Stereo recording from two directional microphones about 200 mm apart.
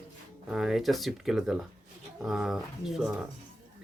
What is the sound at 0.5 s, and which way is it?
Speech, centre (ahead or behind).